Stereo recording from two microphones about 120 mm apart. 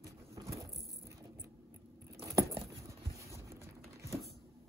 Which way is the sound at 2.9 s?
25° right (ahead or behind).